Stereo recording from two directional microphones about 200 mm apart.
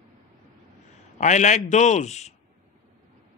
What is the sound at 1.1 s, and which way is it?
Speech, 35° left (ahead or behind).